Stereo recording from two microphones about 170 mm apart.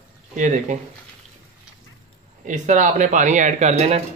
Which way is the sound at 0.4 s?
45° right (ahead or behind).